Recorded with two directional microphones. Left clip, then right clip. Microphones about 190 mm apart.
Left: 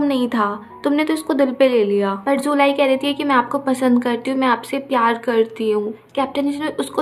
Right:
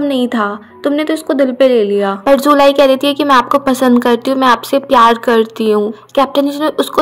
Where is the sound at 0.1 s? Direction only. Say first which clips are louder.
Right 4 dB; 25° right (ahead or behind).